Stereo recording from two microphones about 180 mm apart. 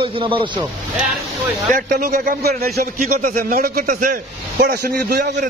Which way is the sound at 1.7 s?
50° right (ahead or behind).